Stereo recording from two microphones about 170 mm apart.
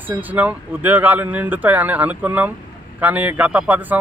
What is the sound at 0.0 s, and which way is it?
Speech, 10° right (ahead or behind).